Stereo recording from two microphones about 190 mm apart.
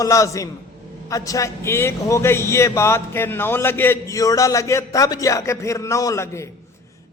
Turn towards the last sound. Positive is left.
turn(degrees=15)  # may be behind; listen again after turning